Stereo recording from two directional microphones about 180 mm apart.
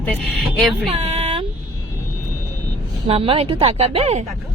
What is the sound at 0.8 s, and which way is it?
Female singing, 35° right (ahead or behind).